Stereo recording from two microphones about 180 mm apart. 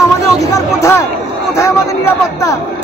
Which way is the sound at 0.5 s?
15° left (ahead or behind).